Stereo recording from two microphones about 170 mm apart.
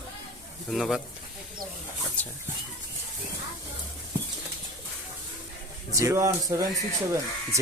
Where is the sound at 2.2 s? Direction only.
10° left (ahead or behind).